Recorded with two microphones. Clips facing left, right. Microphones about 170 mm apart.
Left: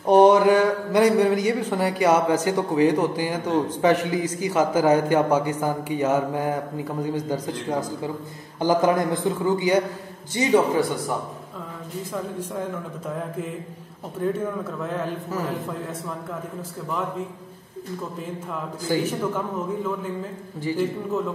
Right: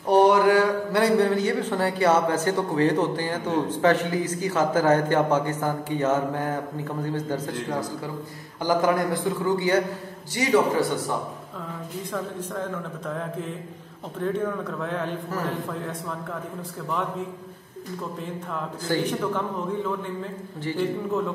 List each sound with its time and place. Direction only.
0.0 s a man's voice: 20° left (ahead or behind)
14.2 s speech: 5° left (ahead or behind)
18.9 s a man's voice: 5° left (ahead or behind)
20.6 s a man's voice: 10° left (ahead or behind)